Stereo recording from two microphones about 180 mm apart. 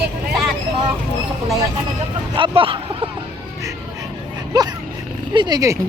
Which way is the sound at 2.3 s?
30° right (ahead or behind).